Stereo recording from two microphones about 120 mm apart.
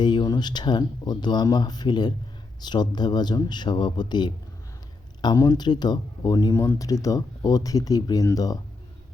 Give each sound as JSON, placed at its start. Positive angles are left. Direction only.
{"t": 0.0, "sound": "speech", "side_deg": 40}